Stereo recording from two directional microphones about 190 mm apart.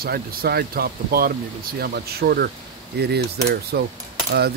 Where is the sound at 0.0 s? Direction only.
55° right (ahead or behind).